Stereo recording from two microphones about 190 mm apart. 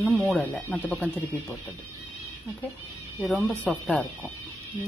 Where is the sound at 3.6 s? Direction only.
5° left (ahead or behind).